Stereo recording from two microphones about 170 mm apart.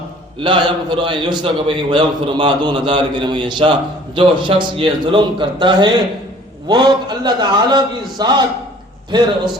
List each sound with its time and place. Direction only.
0.3 s a man's voice: 30° right (ahead or behind)